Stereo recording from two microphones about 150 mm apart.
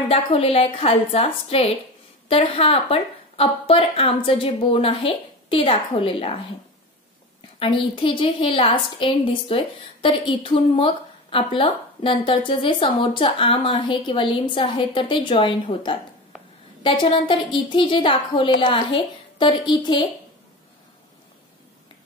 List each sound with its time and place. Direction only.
0.1 s a woman's voice: 40° left (ahead or behind)
7.5 s a woman's voice: 35° left (ahead or behind)